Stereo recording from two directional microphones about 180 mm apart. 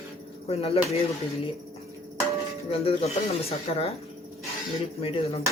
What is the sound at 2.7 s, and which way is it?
Speech, 35° left (ahead or behind).